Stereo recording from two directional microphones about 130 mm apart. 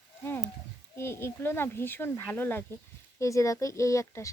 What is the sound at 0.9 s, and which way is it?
Speech, 20° left (ahead or behind).